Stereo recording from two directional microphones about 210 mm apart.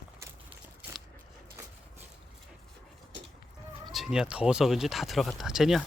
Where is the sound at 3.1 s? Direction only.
60° right (ahead or behind).